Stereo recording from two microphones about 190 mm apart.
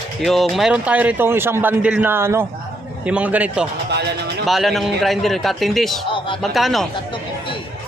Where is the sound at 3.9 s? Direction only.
60° right (ahead or behind).